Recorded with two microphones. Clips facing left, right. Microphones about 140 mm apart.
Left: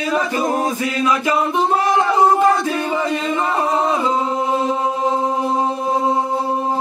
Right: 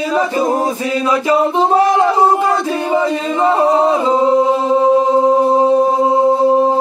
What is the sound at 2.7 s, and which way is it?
Chant, 30° right (ahead or behind).